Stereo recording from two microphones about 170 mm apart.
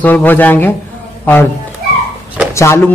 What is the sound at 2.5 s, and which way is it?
Speech, 15° left (ahead or behind).